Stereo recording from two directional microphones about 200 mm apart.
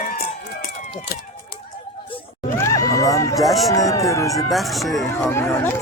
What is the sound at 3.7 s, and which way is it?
Speech, 15° left (ahead or behind).